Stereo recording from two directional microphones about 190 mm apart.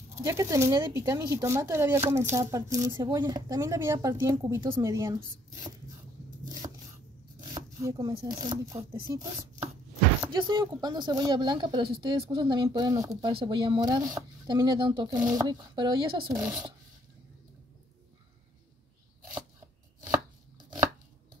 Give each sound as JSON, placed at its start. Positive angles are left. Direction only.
{"t": 0.2, "sound": "speech", "side_deg": -15}
{"t": 6.6, "sound": "a sound", "side_deg": -25}
{"t": 7.5, "sound": "speech", "side_deg": -20}
{"t": 9.1, "sound": "chopping", "side_deg": -20}
{"t": 10.3, "sound": "speech", "side_deg": -25}
{"t": 16.3, "sound": "speech", "side_deg": -5}